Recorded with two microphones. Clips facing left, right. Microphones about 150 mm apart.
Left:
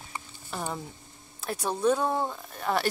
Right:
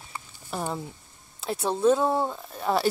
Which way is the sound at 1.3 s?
25° right (ahead or behind).